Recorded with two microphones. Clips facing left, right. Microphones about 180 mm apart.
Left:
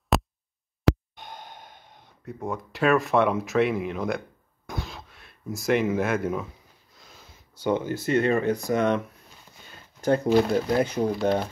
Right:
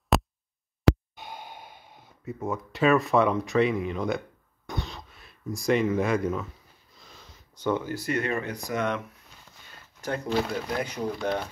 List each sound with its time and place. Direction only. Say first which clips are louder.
0.1 s heart murmur: even; centre (ahead or behind)
1.1 s sigh: right 1 dB; 5° right (ahead or behind)
2.3 s speech: even; centre (ahead or behind)
4.6 s a sound: even; centre (ahead or behind)
7.7 s speech: left 5 dB; 20° left (ahead or behind)
10.0 s speech: left 7 dB; 35° left (ahead or behind)